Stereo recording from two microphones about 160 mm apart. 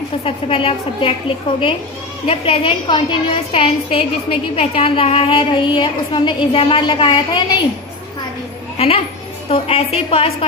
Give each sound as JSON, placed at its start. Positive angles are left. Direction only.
{"t": 0.3, "sound": "a woman's voice", "side_deg": 35}
{"t": 9.5, "sound": "a woman's voice", "side_deg": 40}